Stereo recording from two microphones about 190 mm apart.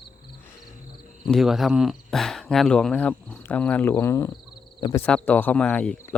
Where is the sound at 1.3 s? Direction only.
Centre (ahead or behind); by 5.0 s 20° left (ahead or behind).